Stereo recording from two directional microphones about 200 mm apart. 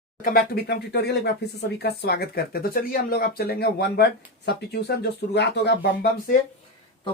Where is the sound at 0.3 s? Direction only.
50° left (ahead or behind).